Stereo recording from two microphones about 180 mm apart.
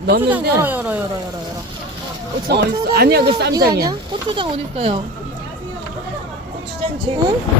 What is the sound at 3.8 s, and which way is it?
Speech, 25° right (ahead or behind).